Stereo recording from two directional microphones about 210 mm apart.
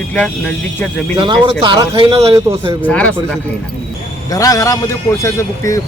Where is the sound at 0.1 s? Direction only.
5° left (ahead or behind).